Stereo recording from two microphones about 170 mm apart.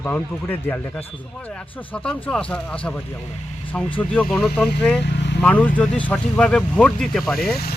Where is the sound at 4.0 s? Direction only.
5° left (ahead or behind).